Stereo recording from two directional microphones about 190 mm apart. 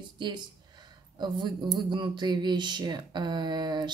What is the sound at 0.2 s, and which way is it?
Speech, 25° right (ahead or behind).